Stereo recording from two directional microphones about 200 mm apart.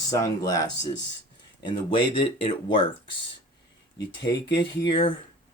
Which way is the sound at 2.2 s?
25° left (ahead or behind).